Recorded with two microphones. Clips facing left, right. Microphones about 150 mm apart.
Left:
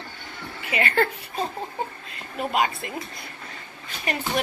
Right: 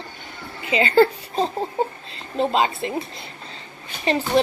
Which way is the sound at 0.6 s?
25° right (ahead or behind).